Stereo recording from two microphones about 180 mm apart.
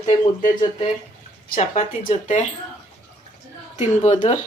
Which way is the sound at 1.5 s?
45° left (ahead or behind).